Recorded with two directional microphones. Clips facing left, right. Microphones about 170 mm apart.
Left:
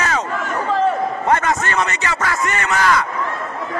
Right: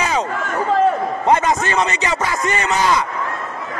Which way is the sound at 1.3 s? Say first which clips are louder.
Right 3 dB; 20° right (ahead or behind).